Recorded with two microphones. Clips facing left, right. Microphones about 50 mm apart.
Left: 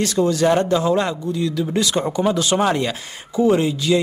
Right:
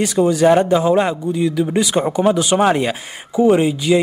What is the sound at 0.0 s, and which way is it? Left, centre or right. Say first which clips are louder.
A man's voice: right 4 dB; centre.